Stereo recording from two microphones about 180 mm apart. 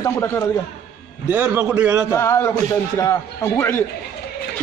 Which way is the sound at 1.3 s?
5° right (ahead or behind).